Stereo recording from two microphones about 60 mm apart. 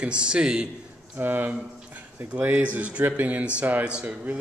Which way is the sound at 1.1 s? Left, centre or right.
Right.